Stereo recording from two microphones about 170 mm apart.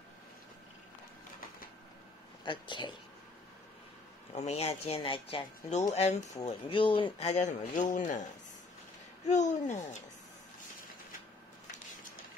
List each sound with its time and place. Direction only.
2.4 s speech: 30° left (ahead or behind)
4.3 s speech: 40° left (ahead or behind)